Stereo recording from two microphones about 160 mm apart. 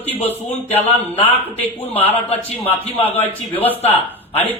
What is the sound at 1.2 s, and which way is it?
Speech, 10° left (ahead or behind).